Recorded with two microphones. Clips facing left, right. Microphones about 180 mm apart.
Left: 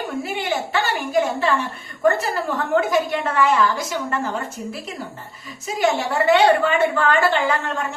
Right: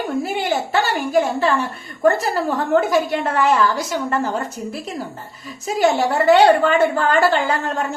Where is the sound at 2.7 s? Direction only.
40° right (ahead or behind).